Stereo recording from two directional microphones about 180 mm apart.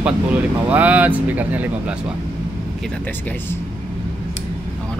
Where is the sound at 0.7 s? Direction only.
10° right (ahead or behind).